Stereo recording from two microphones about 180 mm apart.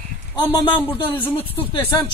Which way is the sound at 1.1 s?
10° left (ahead or behind).